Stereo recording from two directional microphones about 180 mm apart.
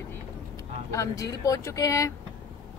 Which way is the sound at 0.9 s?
15° left (ahead or behind).